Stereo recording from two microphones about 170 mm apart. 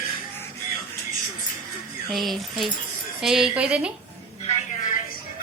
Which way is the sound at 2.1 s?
Centre (ahead or behind).